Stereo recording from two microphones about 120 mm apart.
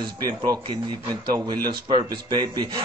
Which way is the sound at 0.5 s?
35° right (ahead or behind).